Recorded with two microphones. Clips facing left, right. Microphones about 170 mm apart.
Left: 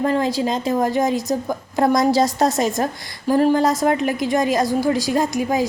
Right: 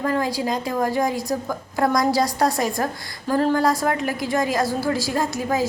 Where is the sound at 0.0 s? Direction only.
25° left (ahead or behind).